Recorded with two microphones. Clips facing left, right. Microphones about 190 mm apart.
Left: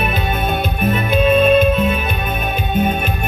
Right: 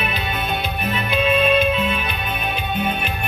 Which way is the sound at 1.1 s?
45° left (ahead or behind).